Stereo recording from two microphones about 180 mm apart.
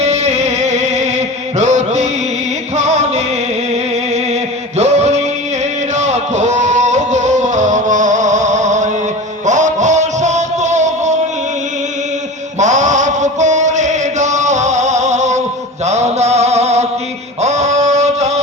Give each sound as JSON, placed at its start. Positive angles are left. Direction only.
{"t": 0.0, "sound": "music", "side_deg": -35}
{"t": 3.7, "sound": "a sound", "side_deg": -35}
{"t": 4.8, "sound": "music", "side_deg": -40}
{"t": 12.5, "sound": "chant", "side_deg": -40}
{"t": 15.8, "sound": "mantra", "side_deg": -40}
{"t": 17.4, "sound": "a sound", "side_deg": -40}